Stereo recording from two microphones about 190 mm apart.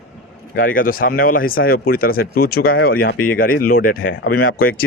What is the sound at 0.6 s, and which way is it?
Speech, 50° left (ahead or behind).